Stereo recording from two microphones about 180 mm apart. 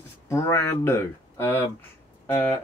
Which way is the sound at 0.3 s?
15° left (ahead or behind).